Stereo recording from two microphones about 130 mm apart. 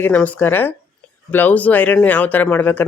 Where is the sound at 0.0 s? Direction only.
15° left (ahead or behind).